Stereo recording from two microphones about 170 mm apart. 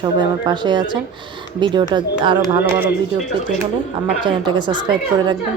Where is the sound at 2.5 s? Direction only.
15° right (ahead or behind).